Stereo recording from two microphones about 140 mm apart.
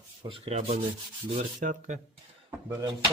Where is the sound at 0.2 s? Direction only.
40° right (ahead or behind).